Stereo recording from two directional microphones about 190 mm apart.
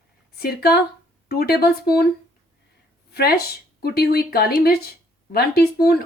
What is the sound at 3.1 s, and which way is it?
A woman's voice, 60° left (ahead or behind).